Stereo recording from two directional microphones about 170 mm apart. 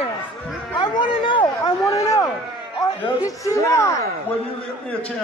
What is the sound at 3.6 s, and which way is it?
Speech, 15° left (ahead or behind).